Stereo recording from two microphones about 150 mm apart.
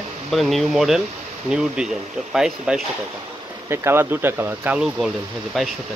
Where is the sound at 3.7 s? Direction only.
15° right (ahead or behind); by 5.7 s centre (ahead or behind).